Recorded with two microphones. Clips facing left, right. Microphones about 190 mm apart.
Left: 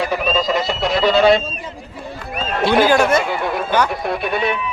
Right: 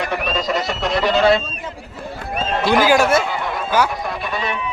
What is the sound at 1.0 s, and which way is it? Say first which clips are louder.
Speech: left 2 dB; 15° left (ahead or behind).